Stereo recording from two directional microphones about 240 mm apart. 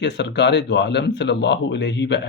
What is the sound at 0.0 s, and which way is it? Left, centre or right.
Speech, left.